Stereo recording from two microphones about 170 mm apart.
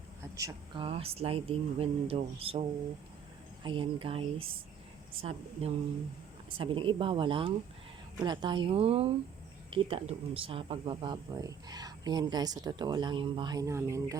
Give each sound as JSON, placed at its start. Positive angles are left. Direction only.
{"t": 0.3, "sound": "speech", "side_deg": -20}
{"t": 0.9, "sound": "speech", "side_deg": -35}